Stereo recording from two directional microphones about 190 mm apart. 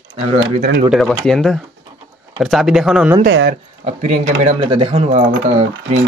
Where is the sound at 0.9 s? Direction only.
Centre (ahead or behind).